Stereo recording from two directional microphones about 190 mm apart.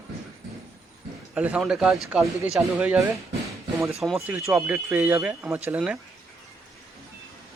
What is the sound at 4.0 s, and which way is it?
Speech, centre (ahead or behind).